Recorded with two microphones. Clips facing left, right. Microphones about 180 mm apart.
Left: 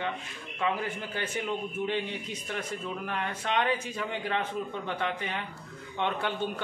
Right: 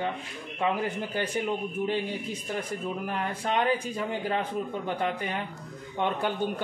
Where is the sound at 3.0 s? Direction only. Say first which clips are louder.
Right 1 dB; 35° right (ahead or behind).